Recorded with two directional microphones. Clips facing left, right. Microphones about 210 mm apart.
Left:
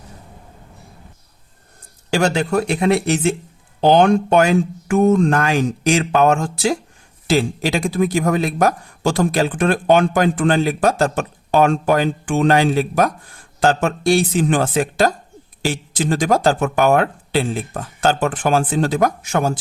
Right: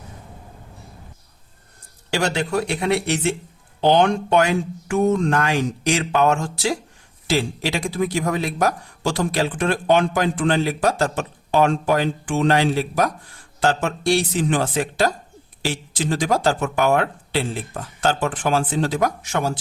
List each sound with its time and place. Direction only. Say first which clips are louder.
2.1 s speech: left 4 dB; 45° left (ahead or behind)